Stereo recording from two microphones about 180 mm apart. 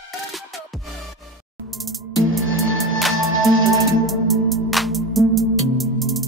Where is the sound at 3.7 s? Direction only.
Centre (ahead or behind).